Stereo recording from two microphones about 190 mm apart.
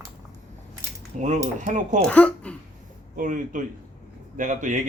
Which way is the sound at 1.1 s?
40° right (ahead or behind).